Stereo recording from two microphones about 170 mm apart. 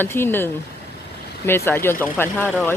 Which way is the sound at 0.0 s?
15° left (ahead or behind).